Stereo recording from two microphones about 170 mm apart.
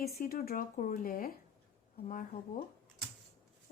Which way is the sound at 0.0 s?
60° left (ahead or behind).